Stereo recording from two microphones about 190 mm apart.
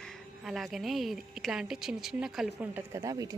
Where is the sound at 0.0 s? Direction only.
Centre (ahead or behind).